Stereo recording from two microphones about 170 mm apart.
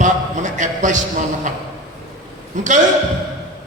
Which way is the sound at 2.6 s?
45° right (ahead or behind).